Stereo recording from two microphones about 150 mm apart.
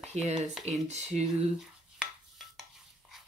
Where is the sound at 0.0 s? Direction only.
45° right (ahead or behind).